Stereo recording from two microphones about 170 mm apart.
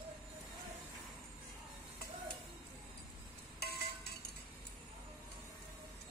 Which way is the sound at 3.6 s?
70° left (ahead or behind).